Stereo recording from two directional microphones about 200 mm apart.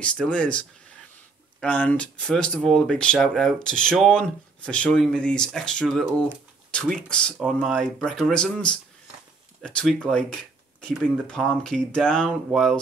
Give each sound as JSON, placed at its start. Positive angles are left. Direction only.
{"t": 0.0, "sound": "speech", "side_deg": 5}